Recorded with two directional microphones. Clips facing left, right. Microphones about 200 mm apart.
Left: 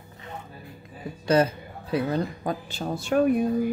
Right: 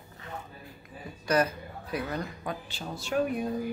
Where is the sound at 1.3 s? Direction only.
25° left (ahead or behind).